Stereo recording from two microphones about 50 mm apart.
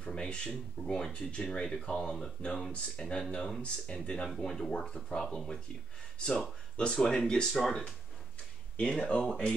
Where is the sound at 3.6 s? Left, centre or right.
Left.